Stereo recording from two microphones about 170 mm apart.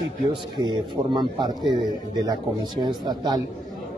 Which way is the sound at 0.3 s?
25° right (ahead or behind).